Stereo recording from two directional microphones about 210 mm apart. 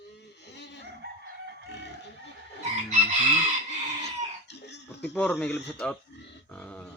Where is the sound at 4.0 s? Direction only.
55° left (ahead or behind).